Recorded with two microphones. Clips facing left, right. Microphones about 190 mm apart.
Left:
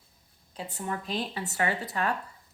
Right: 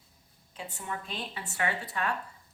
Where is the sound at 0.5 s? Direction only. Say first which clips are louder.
Left 4 dB; 40° left (ahead or behind).